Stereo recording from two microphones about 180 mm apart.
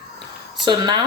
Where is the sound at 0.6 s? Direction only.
25° right (ahead or behind).